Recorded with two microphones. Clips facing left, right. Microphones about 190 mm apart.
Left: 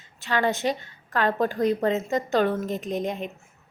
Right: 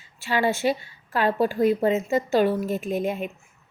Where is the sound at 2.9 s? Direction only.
20° left (ahead or behind).